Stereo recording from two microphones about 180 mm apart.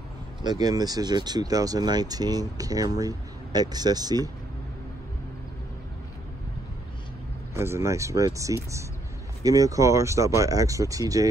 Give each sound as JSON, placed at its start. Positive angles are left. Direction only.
{"t": 0.4, "sound": "speech", "side_deg": -20}
{"t": 7.5, "sound": "speech", "side_deg": -15}